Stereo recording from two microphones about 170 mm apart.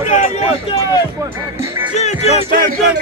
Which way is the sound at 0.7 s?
25° left (ahead or behind).